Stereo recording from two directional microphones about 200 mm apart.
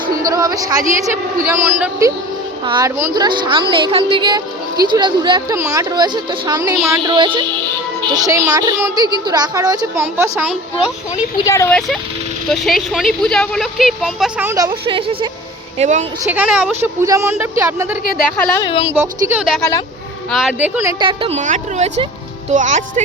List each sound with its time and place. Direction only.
0.3 s a woman's voice: 15° right (ahead or behind)
11.3 s speech: 15° left (ahead or behind)
12.5 s speech: centre (ahead or behind); by 15.3 s 25° right (ahead or behind)
15.8 s a woman's voice: 35° right (ahead or behind)
16.3 s a woman's voice: 5° right (ahead or behind)
18.6 s speech: 25° left (ahead or behind)
18.9 s a woman's voice: 10° right (ahead or behind)
21.0 s a woman's voice: 25° right (ahead or behind)